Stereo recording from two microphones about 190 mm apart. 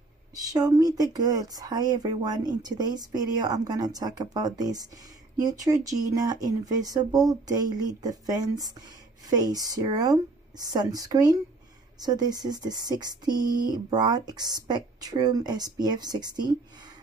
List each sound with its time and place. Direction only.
0.4 s speech: 20° right (ahead or behind)